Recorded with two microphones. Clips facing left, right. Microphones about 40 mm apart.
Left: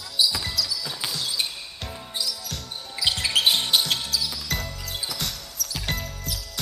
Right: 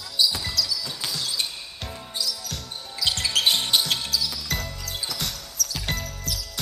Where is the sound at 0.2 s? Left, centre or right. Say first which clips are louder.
Even; centre.